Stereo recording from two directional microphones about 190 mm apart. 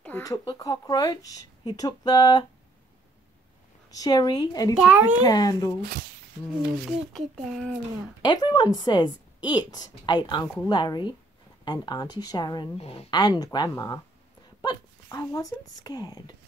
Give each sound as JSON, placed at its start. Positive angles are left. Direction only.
{"t": 0.0, "sound": "speech", "side_deg": 10}
{"t": 3.9, "sound": "speech", "side_deg": 20}
{"t": 4.7, "sound": "a child's voice", "side_deg": -5}
{"t": 5.2, "sound": "speech", "side_deg": 20}
{"t": 5.8, "sound": "speech", "side_deg": -55}
{"t": 7.4, "sound": "speech", "side_deg": 0}
{"t": 8.2, "sound": "speech", "side_deg": 20}
{"t": 13.1, "sound": "speech", "side_deg": 20}